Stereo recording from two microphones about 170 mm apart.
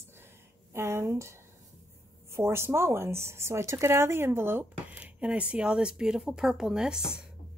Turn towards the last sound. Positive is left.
turn(degrees=-5)  # may be behind; listen again after turning